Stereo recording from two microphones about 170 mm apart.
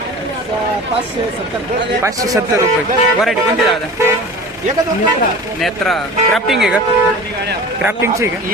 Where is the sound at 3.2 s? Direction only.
Centre (ahead or behind).